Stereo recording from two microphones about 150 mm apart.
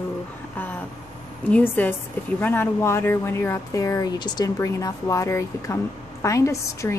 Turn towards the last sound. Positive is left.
turn(degrees=20)  # may be behind; listen again after turning